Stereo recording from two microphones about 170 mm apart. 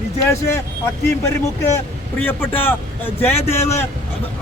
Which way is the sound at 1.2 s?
15° left (ahead or behind).